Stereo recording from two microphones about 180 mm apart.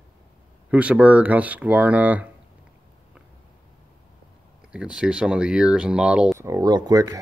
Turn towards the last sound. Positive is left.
turn(degrees=-20)  # may be behind; listen again after turning